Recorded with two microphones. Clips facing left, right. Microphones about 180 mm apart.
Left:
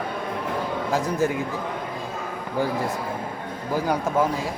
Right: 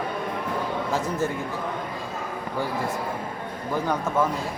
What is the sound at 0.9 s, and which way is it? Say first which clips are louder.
Speech: left 4 dB; 15° left (ahead or behind).